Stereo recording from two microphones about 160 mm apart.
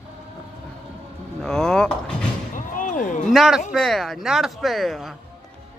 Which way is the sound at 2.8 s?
55° left (ahead or behind).